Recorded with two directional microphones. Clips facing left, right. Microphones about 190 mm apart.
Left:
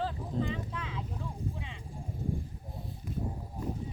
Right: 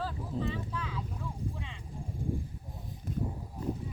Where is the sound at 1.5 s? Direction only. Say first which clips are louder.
Left 1 dB; 15° left (ahead or behind).